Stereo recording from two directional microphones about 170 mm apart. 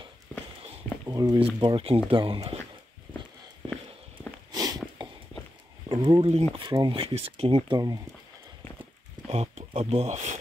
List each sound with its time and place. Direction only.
1.0 s a sound: 20° right (ahead or behind)
1.4 s speech: 30° right (ahead or behind)
4.5 s a sound: 25° right (ahead or behind)
5.0 s walk: 25° right (ahead or behind)
5.9 s speech: 25° right (ahead or behind)
9.3 s speech: 40° right (ahead or behind)